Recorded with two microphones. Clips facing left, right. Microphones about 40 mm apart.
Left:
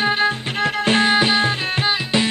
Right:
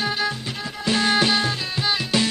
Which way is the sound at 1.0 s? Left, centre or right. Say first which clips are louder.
Left 1 dB; left.